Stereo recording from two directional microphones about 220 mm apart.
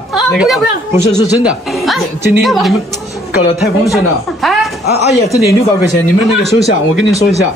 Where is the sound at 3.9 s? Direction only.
Centre (ahead or behind).